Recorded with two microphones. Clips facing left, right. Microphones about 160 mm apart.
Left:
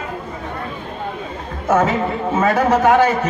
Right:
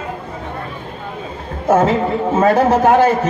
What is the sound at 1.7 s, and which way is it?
A woman's voice, 30° right (ahead or behind).